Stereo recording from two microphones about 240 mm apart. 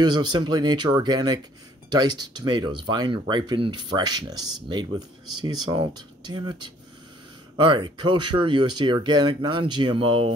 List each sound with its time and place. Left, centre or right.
0.0 s speech: centre